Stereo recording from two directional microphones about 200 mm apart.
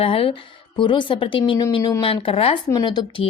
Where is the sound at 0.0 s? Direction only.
25° left (ahead or behind).